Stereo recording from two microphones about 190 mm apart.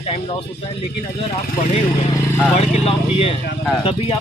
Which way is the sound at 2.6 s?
30° left (ahead or behind).